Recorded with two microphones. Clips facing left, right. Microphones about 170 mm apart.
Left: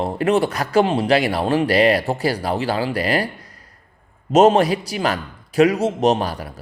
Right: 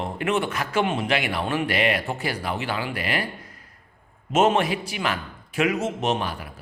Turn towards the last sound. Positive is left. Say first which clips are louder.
# left 5 dB
turn(degrees=40)  # may be behind; listen again after turning